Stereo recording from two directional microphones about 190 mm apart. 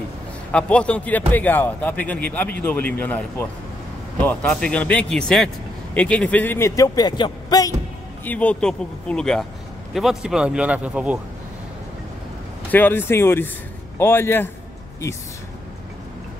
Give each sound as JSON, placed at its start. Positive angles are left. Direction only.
{"t": 0.5, "sound": "speech", "side_deg": 5}
{"t": 8.3, "sound": "speech", "side_deg": 5}
{"t": 12.7, "sound": "speech", "side_deg": 10}